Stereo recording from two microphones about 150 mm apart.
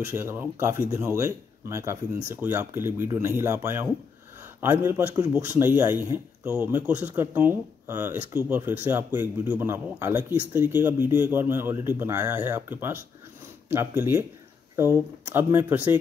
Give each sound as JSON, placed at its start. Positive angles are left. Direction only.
{"t": 0.0, "sound": "speech", "side_deg": -15}